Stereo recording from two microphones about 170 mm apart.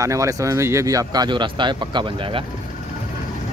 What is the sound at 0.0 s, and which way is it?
Speech, 20° right (ahead or behind).